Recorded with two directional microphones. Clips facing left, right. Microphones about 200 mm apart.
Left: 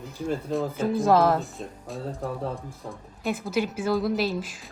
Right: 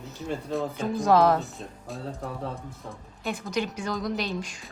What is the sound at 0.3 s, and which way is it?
Speech, centre (ahead or behind).